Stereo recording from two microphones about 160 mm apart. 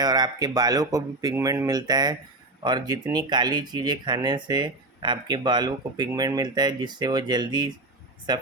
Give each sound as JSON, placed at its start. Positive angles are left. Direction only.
{"t": 0.0, "sound": "speech", "side_deg": -25}